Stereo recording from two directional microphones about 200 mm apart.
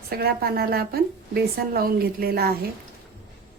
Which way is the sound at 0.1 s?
50° right (ahead or behind).